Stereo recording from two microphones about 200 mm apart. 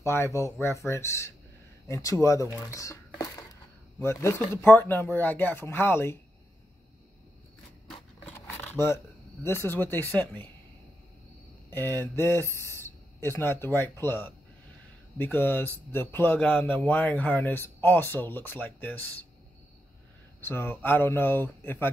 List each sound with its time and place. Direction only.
0.0 s a man's voice: 15° left (ahead or behind)
2.6 s a sound: 15° left (ahead or behind)
4.0 s a man's voice: 15° left (ahead or behind)
8.3 s a sound: 10° left (ahead or behind)
11.7 s a man's voice: 10° left (ahead or behind)
20.3 s a man's voice: 10° left (ahead or behind)